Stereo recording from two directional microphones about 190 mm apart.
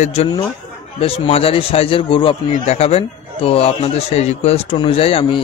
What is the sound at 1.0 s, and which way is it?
A man's voice, 30° left (ahead or behind).